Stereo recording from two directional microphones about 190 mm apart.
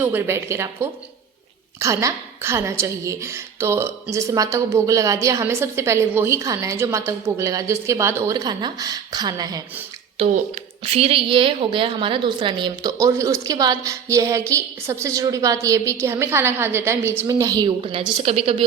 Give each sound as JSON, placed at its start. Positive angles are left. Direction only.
{"t": 0.0, "sound": "a woman's voice", "side_deg": -10}
{"t": 10.2, "sound": "a woman's voice", "side_deg": -35}